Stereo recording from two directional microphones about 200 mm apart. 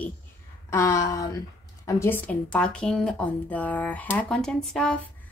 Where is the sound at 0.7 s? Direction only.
15° left (ahead or behind).